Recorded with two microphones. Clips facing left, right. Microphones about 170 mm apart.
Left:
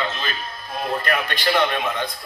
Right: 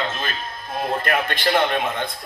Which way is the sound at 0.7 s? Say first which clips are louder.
Right 1 dB; 50° right (ahead or behind).